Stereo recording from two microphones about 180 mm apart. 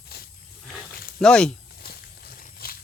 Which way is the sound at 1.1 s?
5° left (ahead or behind).